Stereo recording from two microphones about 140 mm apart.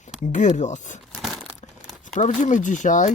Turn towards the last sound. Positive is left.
turn(degrees=60)  # may be behind; listen again after turning